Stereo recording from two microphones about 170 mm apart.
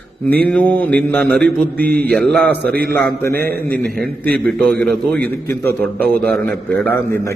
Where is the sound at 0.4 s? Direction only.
10° left (ahead or behind).